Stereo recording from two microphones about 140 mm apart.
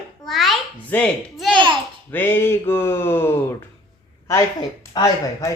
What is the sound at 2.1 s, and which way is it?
Speech, 15° left (ahead or behind).